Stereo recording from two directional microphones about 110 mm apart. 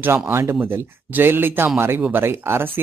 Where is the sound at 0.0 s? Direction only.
20° right (ahead or behind).